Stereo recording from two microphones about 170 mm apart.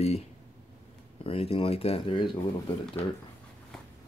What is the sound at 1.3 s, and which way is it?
Speech, 35° left (ahead or behind).